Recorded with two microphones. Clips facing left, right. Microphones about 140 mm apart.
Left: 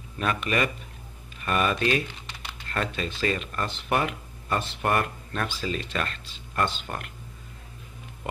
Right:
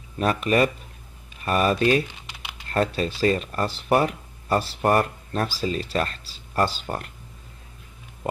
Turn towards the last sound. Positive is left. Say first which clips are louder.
# right 4 dB
turn(degrees=-35)  # may be behind; listen again after turning